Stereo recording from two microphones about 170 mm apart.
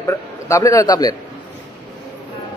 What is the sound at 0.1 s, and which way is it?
A man's voice, 20° left (ahead or behind).